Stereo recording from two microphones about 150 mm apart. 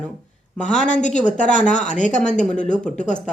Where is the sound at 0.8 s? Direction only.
55° left (ahead or behind).